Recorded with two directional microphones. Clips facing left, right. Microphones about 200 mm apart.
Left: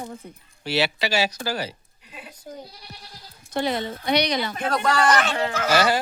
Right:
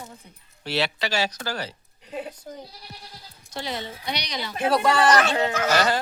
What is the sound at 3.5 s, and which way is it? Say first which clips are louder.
Speech: left 7 dB; 55° left (ahead or behind).